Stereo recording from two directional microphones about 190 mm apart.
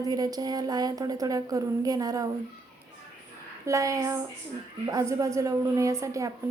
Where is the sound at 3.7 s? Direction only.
15° right (ahead or behind).